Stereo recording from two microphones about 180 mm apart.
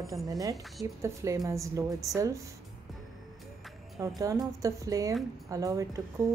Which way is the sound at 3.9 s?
20° right (ahead or behind).